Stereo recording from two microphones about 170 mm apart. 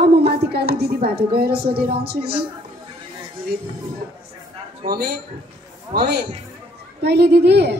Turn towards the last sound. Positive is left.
turn(degrees=-80)